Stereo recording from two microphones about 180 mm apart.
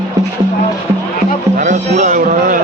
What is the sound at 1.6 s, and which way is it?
Music, 45° right (ahead or behind).